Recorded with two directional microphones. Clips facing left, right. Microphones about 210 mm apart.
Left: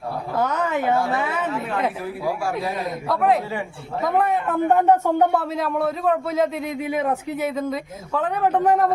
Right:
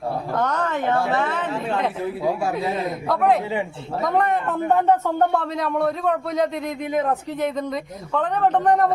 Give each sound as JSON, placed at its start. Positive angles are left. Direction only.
{"t": 0.3, "sound": "a woman's voice", "side_deg": 10}
{"t": 1.5, "sound": "a man's voice", "side_deg": -30}
{"t": 2.8, "sound": "a man's voice", "side_deg": 0}